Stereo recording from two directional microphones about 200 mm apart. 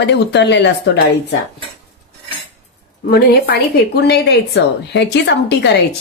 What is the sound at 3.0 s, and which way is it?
A woman's voice, 50° left (ahead or behind).